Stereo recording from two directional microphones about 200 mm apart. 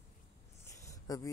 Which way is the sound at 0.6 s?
15° left (ahead or behind).